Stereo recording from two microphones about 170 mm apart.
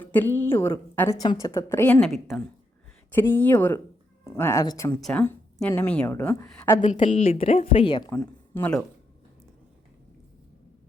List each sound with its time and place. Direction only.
0.0 s a woman's voice: 10° left (ahead or behind)
3.2 s a woman's voice: 10° left (ahead or behind)
4.9 s a woman's voice: 5° left (ahead or behind)
7.0 s speech: 35° left (ahead or behind)
8.1 s speech: 10° left (ahead or behind)